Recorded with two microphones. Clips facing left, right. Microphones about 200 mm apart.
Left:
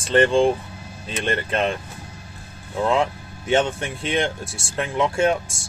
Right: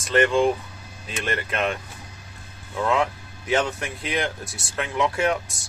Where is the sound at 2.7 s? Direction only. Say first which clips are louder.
Left 2 dB; 25° left (ahead or behind).